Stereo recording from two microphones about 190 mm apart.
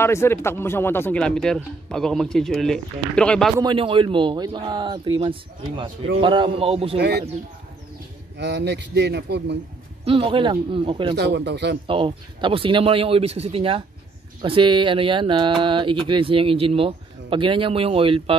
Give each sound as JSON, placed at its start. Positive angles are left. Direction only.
{"t": 0.0, "sound": "speech", "side_deg": 15}
{"t": 3.6, "sound": "a man's voice", "side_deg": -25}
{"t": 7.0, "sound": "a man's voice", "side_deg": -60}
{"t": 8.4, "sound": "a man's voice", "side_deg": -65}
{"t": 10.0, "sound": "a man's voice", "side_deg": -30}
{"t": 11.1, "sound": "a man's voice", "side_deg": -65}
{"t": 11.9, "sound": "a man's voice", "side_deg": -25}